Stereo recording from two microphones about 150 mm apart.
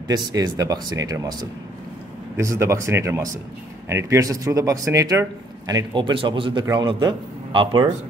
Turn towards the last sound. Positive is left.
turn(degrees=-30)  # may be behind; listen again after turning